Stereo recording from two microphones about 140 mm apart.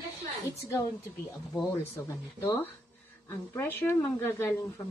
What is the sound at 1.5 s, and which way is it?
Speech, 20° left (ahead or behind).